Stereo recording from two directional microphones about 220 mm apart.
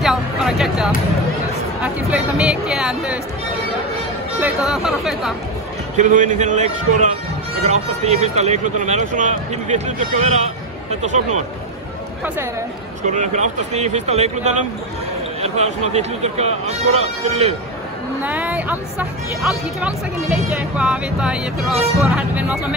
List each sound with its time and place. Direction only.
0.0 s a sound: centre (ahead or behind)
1.8 s speech: 5° right (ahead or behind)
4.4 s speech: 5° right (ahead or behind)
5.9 s speech: 35° right (ahead or behind)
13.0 s speech: 35° right (ahead or behind)
18.2 s speech: 5° right (ahead or behind)